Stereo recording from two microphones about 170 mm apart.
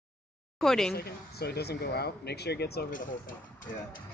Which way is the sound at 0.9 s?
65° left (ahead or behind).